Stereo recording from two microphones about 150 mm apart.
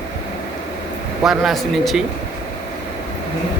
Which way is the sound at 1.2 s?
Centre (ahead or behind).